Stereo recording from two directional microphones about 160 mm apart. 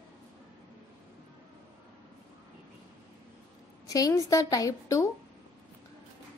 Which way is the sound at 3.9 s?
20° left (ahead or behind).